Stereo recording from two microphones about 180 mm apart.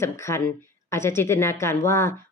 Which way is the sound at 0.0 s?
15° left (ahead or behind).